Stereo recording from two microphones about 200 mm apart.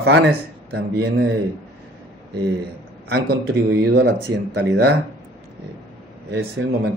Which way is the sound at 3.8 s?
60° right (ahead or behind).